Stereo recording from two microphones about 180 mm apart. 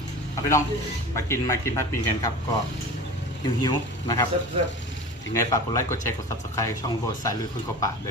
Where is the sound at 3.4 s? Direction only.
25° left (ahead or behind).